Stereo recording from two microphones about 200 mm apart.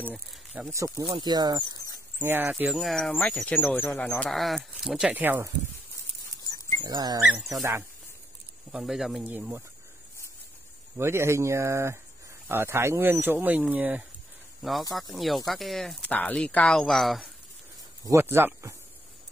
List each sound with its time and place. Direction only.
0.0 s speech: 5° right (ahead or behind); by 1.8 s 20° right (ahead or behind)
2.1 s speech: 10° right (ahead or behind)
6.8 s speech: 20° right (ahead or behind)
8.7 s speech: centre (ahead or behind)
11.0 s speech: 15° right (ahead or behind)
18.0 s speech: 15° right (ahead or behind)